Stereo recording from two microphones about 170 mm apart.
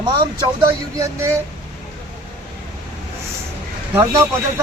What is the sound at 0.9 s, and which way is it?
Speech, 15° right (ahead or behind).